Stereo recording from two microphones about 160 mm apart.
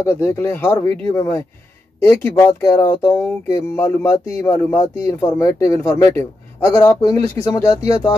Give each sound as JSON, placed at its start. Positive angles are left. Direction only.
{"t": 0.0, "sound": "speech", "side_deg": 15}